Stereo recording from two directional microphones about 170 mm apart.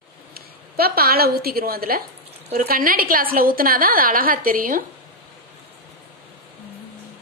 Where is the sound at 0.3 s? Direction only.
65° right (ahead or behind).